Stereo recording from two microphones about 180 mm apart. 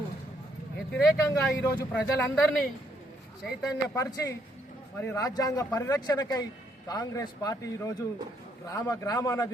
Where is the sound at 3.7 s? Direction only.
15° left (ahead or behind).